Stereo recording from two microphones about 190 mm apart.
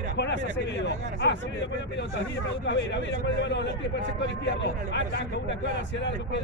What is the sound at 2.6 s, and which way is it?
Speech, 70° left (ahead or behind).